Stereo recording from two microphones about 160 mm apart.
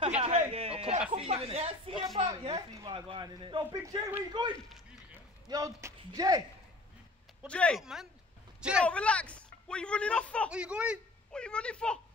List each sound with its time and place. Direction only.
0.0 s a sound: 40° right (ahead or behind)
2.1 s a woman's voice: 25° right (ahead or behind)
7.4 s speech: 5° left (ahead or behind)
8.8 s speech: 5° left (ahead or behind)
10.5 s speech: 5° right (ahead or behind)
11.3 s speech: 5° left (ahead or behind)